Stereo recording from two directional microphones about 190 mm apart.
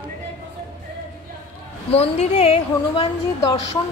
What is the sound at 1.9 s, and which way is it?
A woman's voice, 30° left (ahead or behind).